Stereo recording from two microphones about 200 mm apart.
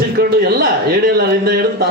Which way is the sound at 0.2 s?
50° right (ahead or behind).